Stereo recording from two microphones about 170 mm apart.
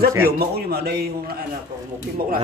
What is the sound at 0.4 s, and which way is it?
A man's voice, 65° right (ahead or behind).